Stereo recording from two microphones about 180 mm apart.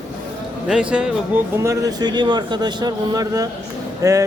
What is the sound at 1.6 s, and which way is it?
A man's voice, 20° right (ahead or behind).